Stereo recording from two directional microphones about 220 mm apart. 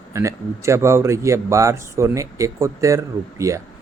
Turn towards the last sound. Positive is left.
turn(degrees=-15)  # may be behind; listen again after turning